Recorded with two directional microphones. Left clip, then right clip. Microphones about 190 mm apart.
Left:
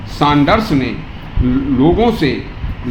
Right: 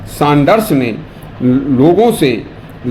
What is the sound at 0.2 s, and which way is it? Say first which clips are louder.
A man's voice: right 2 dB; 45° right (ahead or behind).